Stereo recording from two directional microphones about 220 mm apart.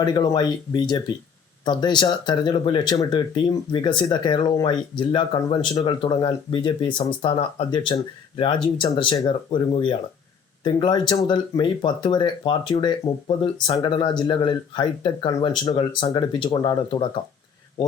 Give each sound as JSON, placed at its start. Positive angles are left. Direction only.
{"t": 0.0, "sound": "speech", "side_deg": 20}